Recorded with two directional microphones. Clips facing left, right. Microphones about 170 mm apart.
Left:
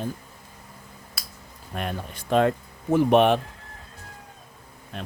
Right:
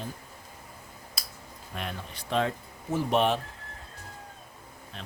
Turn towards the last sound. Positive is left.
turn(degrees=60)  # may be behind; listen again after turning